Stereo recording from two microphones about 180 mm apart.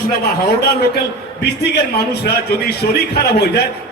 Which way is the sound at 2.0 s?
65° left (ahead or behind).